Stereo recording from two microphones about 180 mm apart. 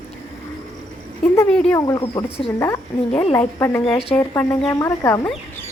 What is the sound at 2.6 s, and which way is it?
Speech, 15° left (ahead or behind).